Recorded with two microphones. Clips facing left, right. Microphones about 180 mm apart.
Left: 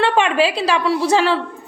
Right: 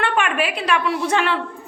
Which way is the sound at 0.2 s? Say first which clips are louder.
Left 5 dB; 25° left (ahead or behind).